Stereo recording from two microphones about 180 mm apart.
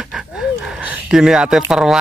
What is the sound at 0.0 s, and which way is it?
Speech, centre (ahead or behind).